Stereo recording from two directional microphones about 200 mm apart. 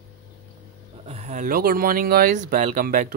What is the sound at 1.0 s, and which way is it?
Speech, 35° right (ahead or behind).